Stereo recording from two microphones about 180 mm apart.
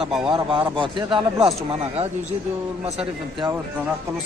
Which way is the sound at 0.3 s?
30° right (ahead or behind).